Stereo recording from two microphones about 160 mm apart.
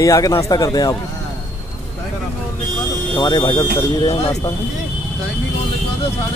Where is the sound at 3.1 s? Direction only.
25° left (ahead or behind).